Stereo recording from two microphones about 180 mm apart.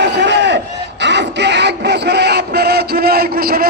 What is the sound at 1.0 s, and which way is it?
Music, 75° right (ahead or behind).